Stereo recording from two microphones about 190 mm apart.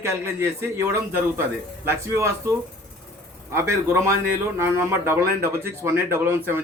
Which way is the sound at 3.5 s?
15° right (ahead or behind).